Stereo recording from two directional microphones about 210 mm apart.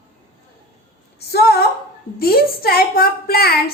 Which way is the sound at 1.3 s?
50° left (ahead or behind).